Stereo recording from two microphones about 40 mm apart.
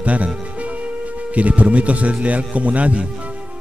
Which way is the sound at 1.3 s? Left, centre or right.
Right.